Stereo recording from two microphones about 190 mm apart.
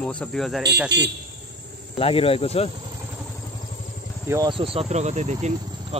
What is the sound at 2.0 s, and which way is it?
Speech, 30° left (ahead or behind).